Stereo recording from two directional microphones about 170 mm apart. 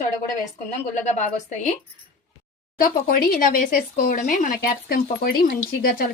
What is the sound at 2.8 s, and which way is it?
Speech, 55° left (ahead or behind).